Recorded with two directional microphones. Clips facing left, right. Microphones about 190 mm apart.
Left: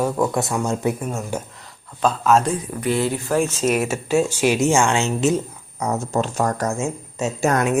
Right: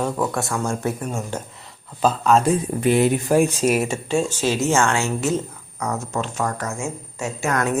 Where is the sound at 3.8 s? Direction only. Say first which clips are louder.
Left 2 dB; 5° left (ahead or behind); by 6.2 s 25° left (ahead or behind).